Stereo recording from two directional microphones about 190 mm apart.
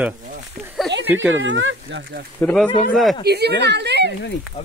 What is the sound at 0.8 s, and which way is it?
Speech, 75° right (ahead or behind).